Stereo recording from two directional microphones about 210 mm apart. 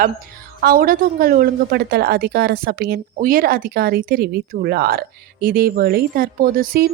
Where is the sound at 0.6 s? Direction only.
45° right (ahead or behind).